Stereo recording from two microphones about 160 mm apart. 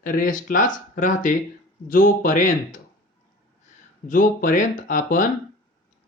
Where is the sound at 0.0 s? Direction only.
60° left (ahead or behind).